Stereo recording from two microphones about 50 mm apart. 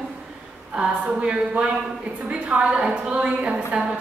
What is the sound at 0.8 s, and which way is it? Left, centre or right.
A woman's voice, centre.